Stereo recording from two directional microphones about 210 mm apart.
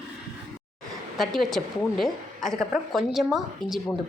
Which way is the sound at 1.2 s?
Centre (ahead or behind).